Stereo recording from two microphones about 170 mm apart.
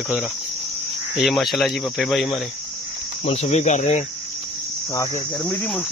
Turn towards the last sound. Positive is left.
turn(degrees=20)  # may be behind; listen again after turning